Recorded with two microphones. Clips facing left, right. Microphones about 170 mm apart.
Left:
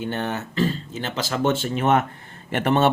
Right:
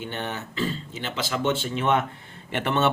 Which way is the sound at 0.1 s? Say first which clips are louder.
Left 5 dB; 45° left (ahead or behind).